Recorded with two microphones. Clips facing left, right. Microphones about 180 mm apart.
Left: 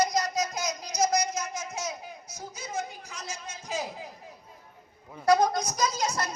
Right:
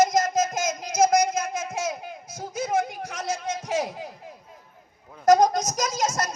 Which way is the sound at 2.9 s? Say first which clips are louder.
Right 10 dB; 80° right.